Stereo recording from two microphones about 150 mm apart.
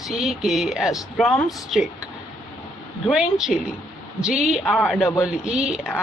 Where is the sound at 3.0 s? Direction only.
5° right (ahead or behind).